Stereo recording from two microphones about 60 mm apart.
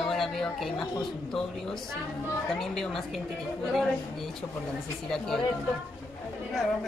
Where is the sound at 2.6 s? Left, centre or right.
Centre.